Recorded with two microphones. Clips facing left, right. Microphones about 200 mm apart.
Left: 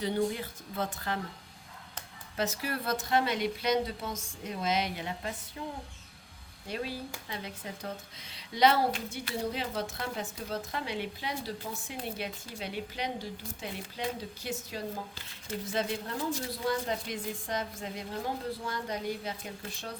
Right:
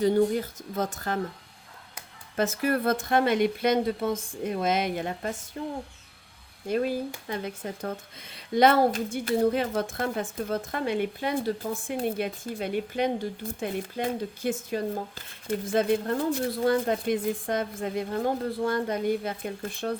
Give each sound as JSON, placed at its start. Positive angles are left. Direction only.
{"t": 0.0, "sound": "speech", "side_deg": -45}
{"t": 2.3, "sound": "speech", "side_deg": -50}
{"t": 6.7, "sound": "a woman's voice", "side_deg": -50}